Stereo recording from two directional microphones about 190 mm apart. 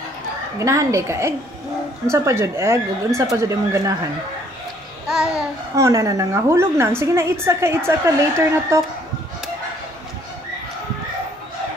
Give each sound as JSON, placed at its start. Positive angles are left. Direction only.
{"t": 0.6, "sound": "speech", "side_deg": -15}
{"t": 5.0, "sound": "babbling", "side_deg": -5}
{"t": 5.8, "sound": "speech", "side_deg": -15}